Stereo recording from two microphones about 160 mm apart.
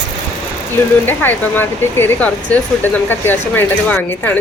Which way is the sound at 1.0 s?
15° left (ahead or behind).